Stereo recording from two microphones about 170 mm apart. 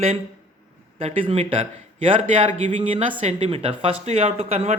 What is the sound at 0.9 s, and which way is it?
Speech, 35° right (ahead or behind).